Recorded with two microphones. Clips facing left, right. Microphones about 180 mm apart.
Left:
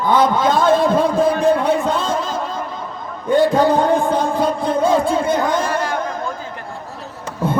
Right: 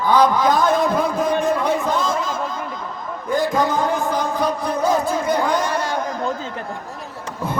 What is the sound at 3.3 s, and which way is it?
Music, 30° left (ahead or behind).